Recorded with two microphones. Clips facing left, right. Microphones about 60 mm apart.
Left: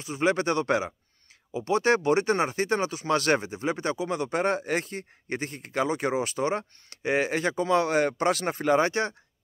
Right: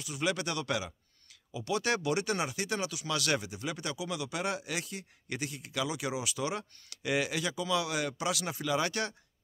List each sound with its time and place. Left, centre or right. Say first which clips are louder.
0.0 s speech: left 8 dB; left